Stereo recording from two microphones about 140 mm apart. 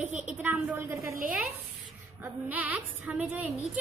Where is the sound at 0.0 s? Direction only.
10° right (ahead or behind).